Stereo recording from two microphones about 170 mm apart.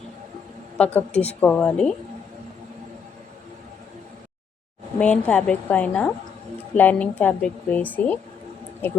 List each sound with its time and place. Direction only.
0.8 s a woman's voice: 10° left (ahead or behind)
1.1 s a woman's voice: 40° left (ahead or behind)
1.4 s a woman's voice: 10° left (ahead or behind)
4.9 s a woman's voice: 10° left (ahead or behind)